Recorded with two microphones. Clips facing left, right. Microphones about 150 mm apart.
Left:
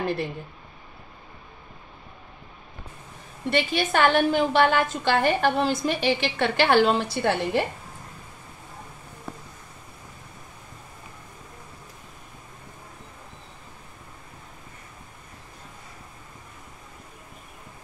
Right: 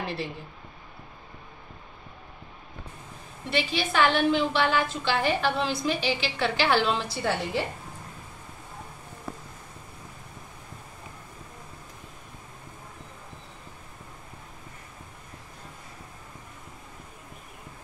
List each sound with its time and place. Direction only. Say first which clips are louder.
3.4 s a woman's voice: left 4 dB; 55° left (ahead or behind)